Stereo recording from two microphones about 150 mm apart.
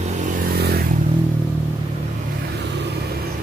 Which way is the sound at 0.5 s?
90° right.